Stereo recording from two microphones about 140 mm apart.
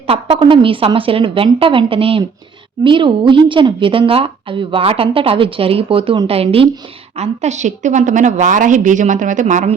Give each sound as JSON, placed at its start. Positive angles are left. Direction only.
{"t": 0.1, "sound": "a woman's voice", "side_deg": -40}
{"t": 7.2, "sound": "a woman's voice", "side_deg": -55}